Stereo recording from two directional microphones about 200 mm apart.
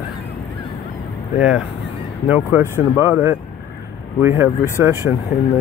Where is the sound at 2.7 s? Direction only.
15° left (ahead or behind).